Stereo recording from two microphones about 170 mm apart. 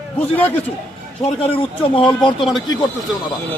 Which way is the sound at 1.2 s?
35° left (ahead or behind).